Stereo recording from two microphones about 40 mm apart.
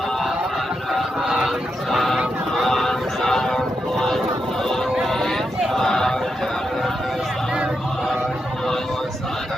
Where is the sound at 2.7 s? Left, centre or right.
Centre.